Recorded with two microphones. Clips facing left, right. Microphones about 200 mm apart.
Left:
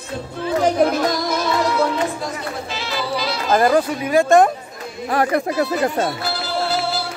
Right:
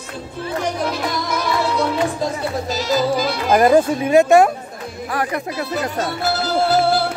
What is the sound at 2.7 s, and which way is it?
Music, 40° right (ahead or behind).